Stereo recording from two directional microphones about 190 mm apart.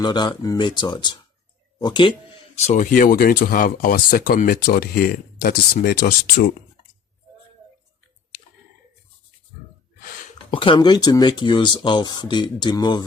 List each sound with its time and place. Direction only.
0.0 s speech: 25° left (ahead or behind)
2.6 s speech: 40° left (ahead or behind)
10.5 s speech: 25° left (ahead or behind)